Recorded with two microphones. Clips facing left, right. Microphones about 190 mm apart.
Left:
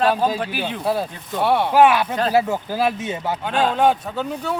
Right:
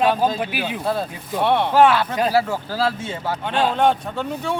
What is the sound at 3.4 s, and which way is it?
Speech, 5° left (ahead or behind).